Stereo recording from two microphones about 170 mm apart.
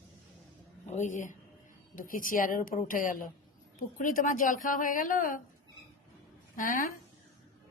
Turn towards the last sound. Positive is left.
turn(degrees=50)  # may be behind; listen again after turning